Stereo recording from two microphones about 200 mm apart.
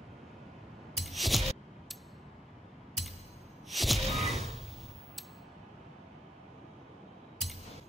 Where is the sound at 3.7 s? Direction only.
Centre (ahead or behind).